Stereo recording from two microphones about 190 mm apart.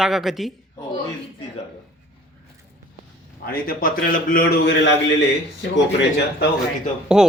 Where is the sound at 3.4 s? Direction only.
50° left (ahead or behind).